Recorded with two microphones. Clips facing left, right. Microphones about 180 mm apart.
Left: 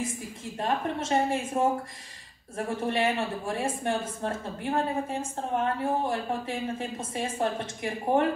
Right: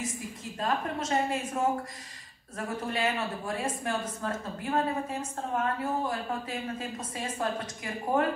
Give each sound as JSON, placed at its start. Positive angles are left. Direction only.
{"t": 0.6, "sound": "speech", "side_deg": 25}